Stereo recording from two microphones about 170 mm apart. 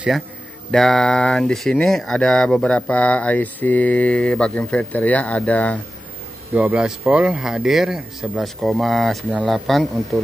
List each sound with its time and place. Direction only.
0.7 s speech: 5° left (ahead or behind)
6.5 s a man's voice: 5° right (ahead or behind)